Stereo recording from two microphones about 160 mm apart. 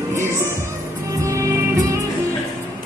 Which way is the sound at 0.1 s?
15° right (ahead or behind).